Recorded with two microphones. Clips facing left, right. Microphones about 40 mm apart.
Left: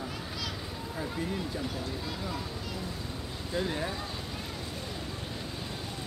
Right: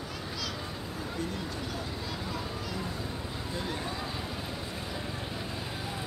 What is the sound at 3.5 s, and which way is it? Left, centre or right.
Speech, centre.